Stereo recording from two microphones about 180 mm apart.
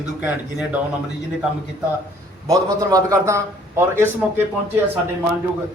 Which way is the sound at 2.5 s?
20° right (ahead or behind).